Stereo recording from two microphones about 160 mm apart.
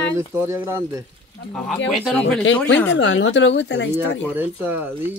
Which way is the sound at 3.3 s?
90° left.